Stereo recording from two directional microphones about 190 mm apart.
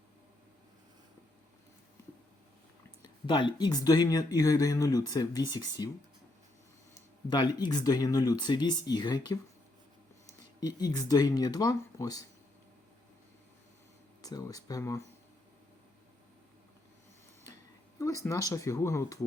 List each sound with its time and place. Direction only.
3.0 s speech: 25° left (ahead or behind)
7.3 s speech: 20° left (ahead or behind)
14.2 s speech: 20° left (ahead or behind)
18.0 s speech: 15° left (ahead or behind)